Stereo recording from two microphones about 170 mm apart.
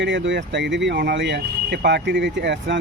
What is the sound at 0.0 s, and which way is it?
Speech, 90° right.